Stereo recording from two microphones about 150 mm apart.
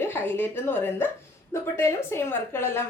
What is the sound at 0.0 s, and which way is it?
A woman's voice, 15° left (ahead or behind).